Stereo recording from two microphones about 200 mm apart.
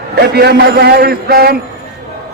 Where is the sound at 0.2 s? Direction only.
55° right (ahead or behind).